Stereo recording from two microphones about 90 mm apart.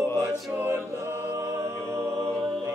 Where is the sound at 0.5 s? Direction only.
25° right (ahead or behind).